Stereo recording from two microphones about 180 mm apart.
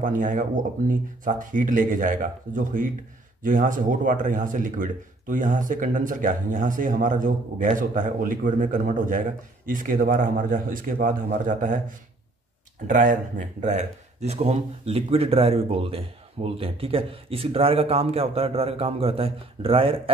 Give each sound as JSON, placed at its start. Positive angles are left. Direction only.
{"t": 0.0, "sound": "speech", "side_deg": -45}
{"t": 12.8, "sound": "a man's voice", "side_deg": -45}